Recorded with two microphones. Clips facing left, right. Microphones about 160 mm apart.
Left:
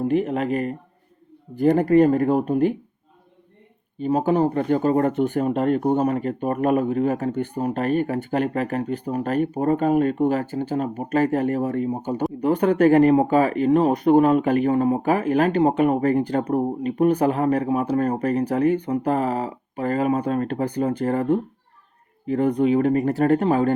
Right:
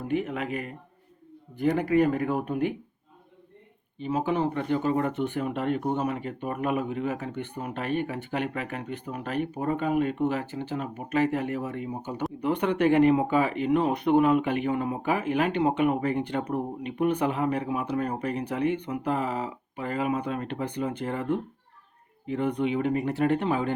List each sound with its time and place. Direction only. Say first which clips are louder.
0.0 s speech: left 7 dB; 35° left (ahead or behind)
3.9 s speech: left 7 dB; 45° left (ahead or behind)